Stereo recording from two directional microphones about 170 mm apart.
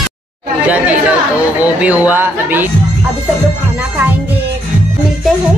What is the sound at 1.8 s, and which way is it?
Speech, 10° right (ahead or behind).